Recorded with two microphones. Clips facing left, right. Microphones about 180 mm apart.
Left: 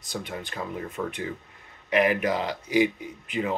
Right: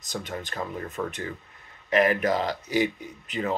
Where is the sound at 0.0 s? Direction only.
10° left (ahead or behind).